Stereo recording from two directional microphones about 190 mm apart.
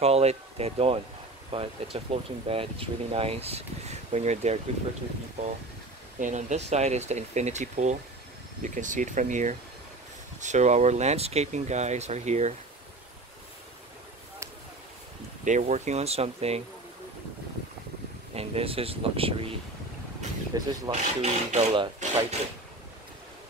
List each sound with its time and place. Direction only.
0.0 s speech: 35° right (ahead or behind)
6.1 s speech: 40° right (ahead or behind)
15.4 s speech: 40° right (ahead or behind)
18.3 s speech: 30° right (ahead or behind)
20.5 s speech: 20° right (ahead or behind)
20.9 s speech: 35° right (ahead or behind)